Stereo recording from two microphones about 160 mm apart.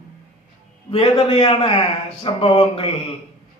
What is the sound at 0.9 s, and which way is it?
Speech, 40° left (ahead or behind).